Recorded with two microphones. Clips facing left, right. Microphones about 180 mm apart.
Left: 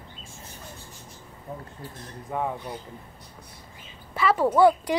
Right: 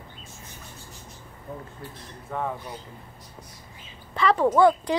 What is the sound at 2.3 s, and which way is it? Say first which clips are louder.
Speech: left 2 dB; 15° left (ahead or behind).